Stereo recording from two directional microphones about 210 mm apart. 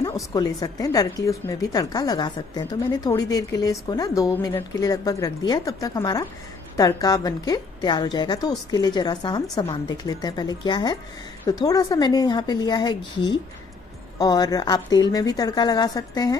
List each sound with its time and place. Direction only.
0.0 s a woman's voice: 15° left (ahead or behind)